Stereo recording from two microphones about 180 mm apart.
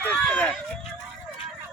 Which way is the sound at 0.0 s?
10° left (ahead or behind).